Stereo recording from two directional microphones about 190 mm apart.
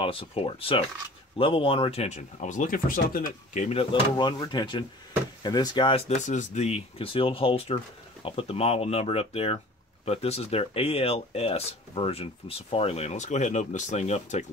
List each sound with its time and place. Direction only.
0.0 s speech: 30° left (ahead or behind)